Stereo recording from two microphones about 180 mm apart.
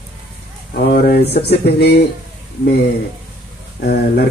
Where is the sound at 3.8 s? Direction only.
60° left (ahead or behind).